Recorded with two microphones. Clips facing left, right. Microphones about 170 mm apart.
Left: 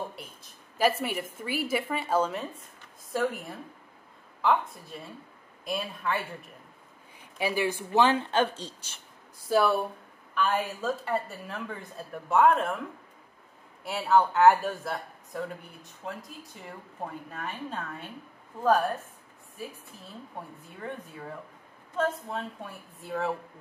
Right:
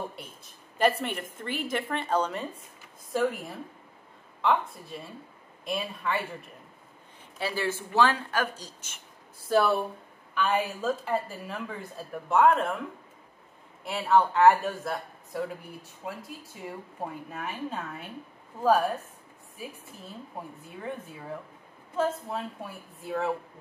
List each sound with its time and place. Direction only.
0.7 s a woman's voice: 5° left (ahead or behind)
7.3 s speech: 15° left (ahead or behind); by 9.0 s 30° left (ahead or behind)
9.5 s a woman's voice: centre (ahead or behind)
13.8 s a woman's voice: centre (ahead or behind)
21.9 s a woman's voice: 5° right (ahead or behind)